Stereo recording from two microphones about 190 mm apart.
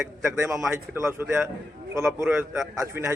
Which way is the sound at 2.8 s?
15° right (ahead or behind).